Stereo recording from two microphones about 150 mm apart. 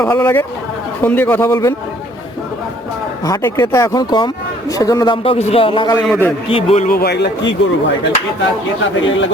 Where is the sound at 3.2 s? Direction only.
20° left (ahead or behind).